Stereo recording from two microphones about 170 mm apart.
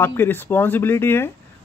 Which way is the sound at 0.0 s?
15° left (ahead or behind).